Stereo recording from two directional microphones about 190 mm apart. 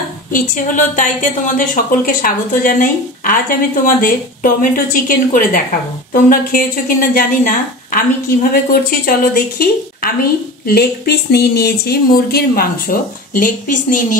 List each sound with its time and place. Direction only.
0.3 s a woman's voice: 45° left (ahead or behind)